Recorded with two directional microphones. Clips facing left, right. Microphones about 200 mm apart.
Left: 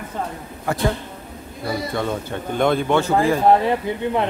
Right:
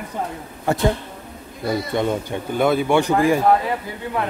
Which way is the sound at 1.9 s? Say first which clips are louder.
Right 3 dB; 15° right (ahead or behind).